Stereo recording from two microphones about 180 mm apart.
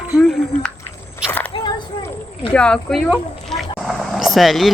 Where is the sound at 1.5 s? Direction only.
25° left (ahead or behind).